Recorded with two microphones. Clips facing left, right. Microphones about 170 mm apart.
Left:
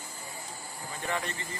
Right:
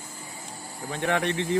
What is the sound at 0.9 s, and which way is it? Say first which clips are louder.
Speech: right 9 dB; 75° right (ahead or behind).